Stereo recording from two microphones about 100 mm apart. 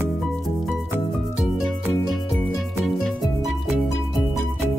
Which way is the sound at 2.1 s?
Centre (ahead or behind).